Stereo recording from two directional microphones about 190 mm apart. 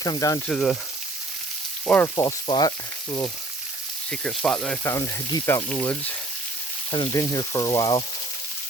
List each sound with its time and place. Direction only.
0.0 s speech: 20° left (ahead or behind)
0.4 s speech: centre (ahead or behind)
1.9 s speech: 10° left (ahead or behind)
2.2 s speech: 20° left (ahead or behind)
4.1 s speech: 5° left (ahead or behind)
6.9 s speech: 20° left (ahead or behind)